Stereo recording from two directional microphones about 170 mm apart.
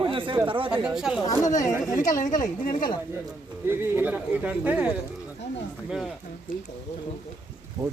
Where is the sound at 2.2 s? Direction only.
50° left (ahead or behind).